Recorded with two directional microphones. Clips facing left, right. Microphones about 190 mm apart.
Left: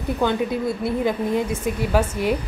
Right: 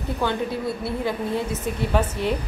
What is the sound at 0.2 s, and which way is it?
A woman's voice, 15° left (ahead or behind).